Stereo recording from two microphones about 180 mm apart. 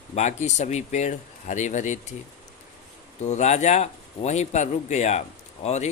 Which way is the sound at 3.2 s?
40° left (ahead or behind).